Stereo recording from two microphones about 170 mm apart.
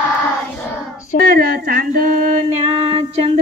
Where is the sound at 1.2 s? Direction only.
60° right (ahead or behind).